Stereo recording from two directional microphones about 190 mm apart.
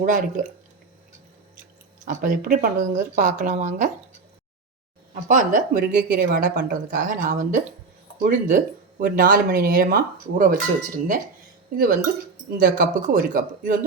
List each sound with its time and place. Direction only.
0.0 s speech: 45° right (ahead or behind)
2.0 s speech: 40° right (ahead or behind)
5.3 s speech: 45° right (ahead or behind)
12.5 s speech: 50° right (ahead or behind)